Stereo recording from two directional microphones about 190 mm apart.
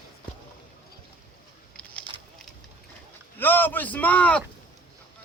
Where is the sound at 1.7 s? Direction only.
5° left (ahead or behind).